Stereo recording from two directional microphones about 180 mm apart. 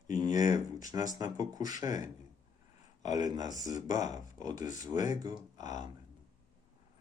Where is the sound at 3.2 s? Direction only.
20° right (ahead or behind).